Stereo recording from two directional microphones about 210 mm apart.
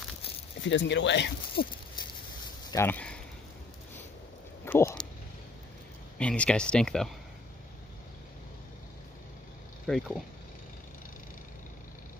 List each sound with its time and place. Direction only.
0.6 s speech: 60° left (ahead or behind)
2.7 s speech: 10° left (ahead or behind)
4.6 s speech: 10° left (ahead or behind)
6.1 s speech: 5° left (ahead or behind)
9.8 s speech: centre (ahead or behind)